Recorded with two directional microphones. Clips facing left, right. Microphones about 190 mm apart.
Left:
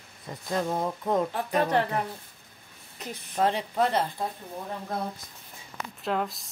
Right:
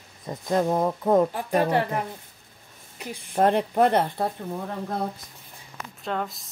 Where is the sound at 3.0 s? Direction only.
10° right (ahead or behind).